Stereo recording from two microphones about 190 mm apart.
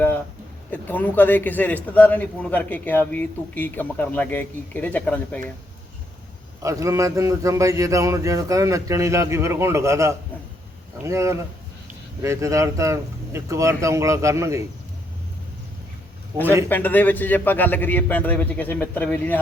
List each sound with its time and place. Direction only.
0.7 s a man's voice: 10° left (ahead or behind)
6.6 s a man's voice: 15° right (ahead or behind)
16.6 s a man's voice: 10° left (ahead or behind)